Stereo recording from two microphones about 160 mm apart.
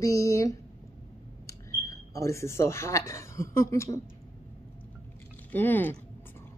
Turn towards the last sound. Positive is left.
turn(degrees=10)  # may be behind; listen again after turning